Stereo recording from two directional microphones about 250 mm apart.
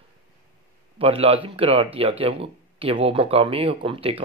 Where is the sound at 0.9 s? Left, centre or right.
Right.